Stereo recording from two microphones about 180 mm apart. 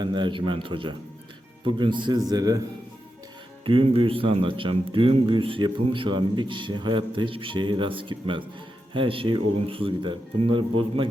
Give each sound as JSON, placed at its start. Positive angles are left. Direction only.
{"t": 0.0, "sound": "a man's voice", "side_deg": -25}
{"t": 3.6, "sound": "a man's voice", "side_deg": -30}